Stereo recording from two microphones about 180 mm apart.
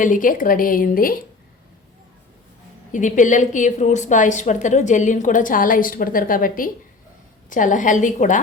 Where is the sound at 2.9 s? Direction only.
45° left (ahead or behind).